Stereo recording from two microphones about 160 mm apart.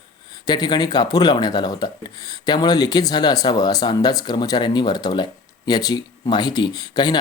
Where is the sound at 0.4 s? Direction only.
25° left (ahead or behind).